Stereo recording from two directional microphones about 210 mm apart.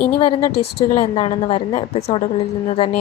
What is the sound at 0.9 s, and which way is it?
A woman's voice, 30° left (ahead or behind).